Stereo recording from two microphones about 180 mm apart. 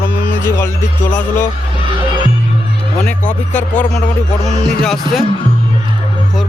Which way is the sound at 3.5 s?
10° left (ahead or behind).